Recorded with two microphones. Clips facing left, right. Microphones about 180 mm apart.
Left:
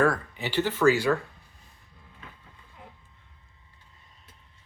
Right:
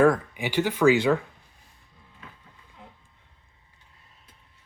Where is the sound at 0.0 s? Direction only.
15° right (ahead or behind).